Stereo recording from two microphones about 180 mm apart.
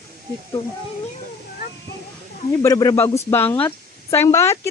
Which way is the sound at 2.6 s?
20° left (ahead or behind).